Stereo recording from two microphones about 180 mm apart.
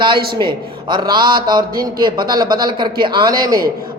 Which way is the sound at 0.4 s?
25° right (ahead or behind).